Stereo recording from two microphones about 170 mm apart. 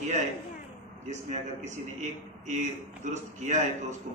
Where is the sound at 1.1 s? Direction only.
45° right (ahead or behind).